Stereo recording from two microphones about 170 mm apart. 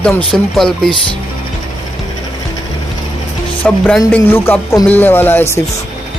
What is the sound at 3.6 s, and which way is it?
Speech, 5° left (ahead or behind).